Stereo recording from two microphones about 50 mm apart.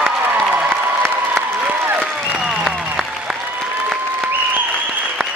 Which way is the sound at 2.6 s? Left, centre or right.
Centre.